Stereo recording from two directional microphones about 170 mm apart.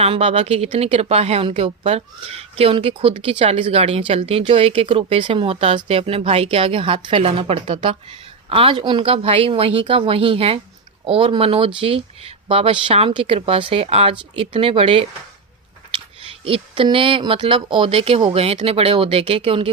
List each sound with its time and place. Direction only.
0.0 s a woman's voice: 40° right (ahead or behind)
16.4 s a woman's voice: 30° right (ahead or behind)